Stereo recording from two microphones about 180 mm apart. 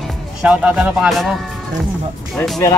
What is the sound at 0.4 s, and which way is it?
Speech, 5° right (ahead or behind).